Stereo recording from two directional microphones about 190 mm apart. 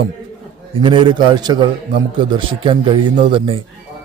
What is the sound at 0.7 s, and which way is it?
A man's voice, 25° right (ahead or behind).